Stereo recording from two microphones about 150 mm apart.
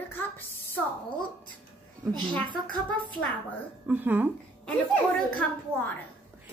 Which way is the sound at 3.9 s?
10° right (ahead or behind).